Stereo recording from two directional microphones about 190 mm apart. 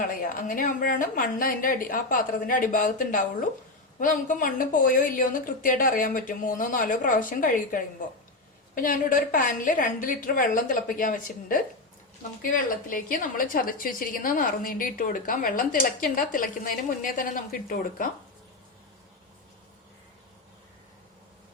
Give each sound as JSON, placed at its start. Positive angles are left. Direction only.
{"t": 0.0, "sound": "a woman's voice", "side_deg": 45}